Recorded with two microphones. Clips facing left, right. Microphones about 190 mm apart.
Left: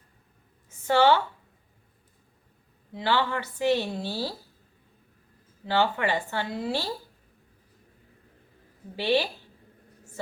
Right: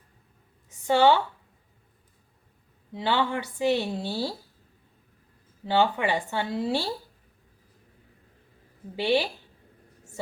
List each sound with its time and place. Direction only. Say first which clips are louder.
0.9 s speech: right 1 dB; 15° right (ahead or behind)
2.9 s speech: even; 20° right (ahead or behind)
5.6 s speech: right 1 dB; 15° right (ahead or behind)
9.0 s speech: right 1 dB; 15° right (ahead or behind)